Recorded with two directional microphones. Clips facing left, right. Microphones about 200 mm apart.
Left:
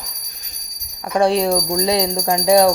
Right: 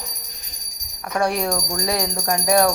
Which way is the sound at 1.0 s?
25° left (ahead or behind).